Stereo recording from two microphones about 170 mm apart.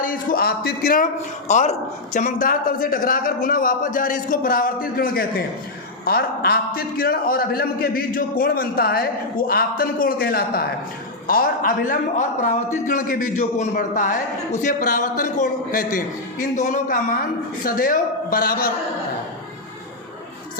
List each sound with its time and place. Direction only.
0.0 s a man's voice: 60° left (ahead or behind)
1.5 s a woman's voice: 45° left (ahead or behind); by 18.7 s 60° left (ahead or behind)